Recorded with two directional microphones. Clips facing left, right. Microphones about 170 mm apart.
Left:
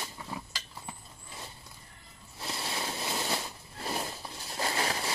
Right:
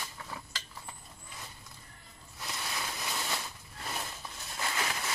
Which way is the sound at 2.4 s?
30° left (ahead or behind).